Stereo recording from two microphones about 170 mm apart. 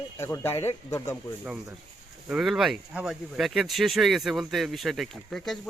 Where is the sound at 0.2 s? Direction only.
15° left (ahead or behind).